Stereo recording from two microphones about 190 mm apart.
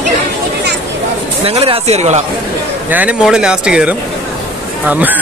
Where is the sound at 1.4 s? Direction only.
30° right (ahead or behind).